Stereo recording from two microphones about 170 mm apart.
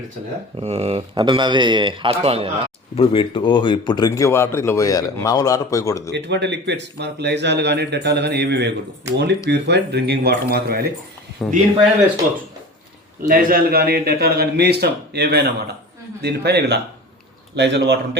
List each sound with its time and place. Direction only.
0.6 s a man's voice: 40° right (ahead or behind)
2.9 s speech: 30° left (ahead or behind)
6.1 s a man's voice: 90° right; by 10.3 s 75° right (ahead or behind)
10.5 s a man's voice: 60° right (ahead or behind)
11.4 s speech: centre (ahead or behind)
13.2 s a man's voice: 55° right (ahead or behind); by 18.2 s 85° right